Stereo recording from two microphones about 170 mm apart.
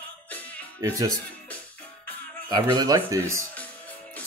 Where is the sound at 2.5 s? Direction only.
25° right (ahead or behind).